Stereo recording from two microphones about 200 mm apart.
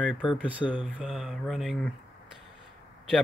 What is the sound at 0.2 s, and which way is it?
Speech, 5° left (ahead or behind).